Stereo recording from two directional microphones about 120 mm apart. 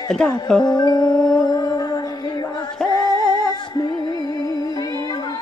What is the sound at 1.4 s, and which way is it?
Music, 35° left (ahead or behind).